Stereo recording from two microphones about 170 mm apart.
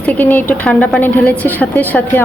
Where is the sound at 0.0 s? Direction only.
10° left (ahead or behind).